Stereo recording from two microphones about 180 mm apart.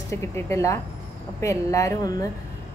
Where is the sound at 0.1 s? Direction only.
15° left (ahead or behind).